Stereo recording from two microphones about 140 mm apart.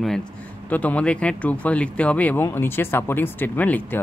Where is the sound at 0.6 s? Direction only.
10° left (ahead or behind).